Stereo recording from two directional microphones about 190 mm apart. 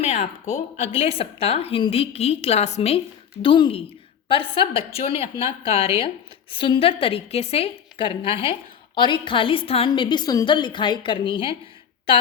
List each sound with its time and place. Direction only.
0.0 s a woman's voice: 35° left (ahead or behind)